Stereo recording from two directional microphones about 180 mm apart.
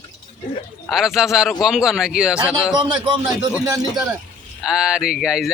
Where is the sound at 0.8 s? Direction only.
Centre (ahead or behind).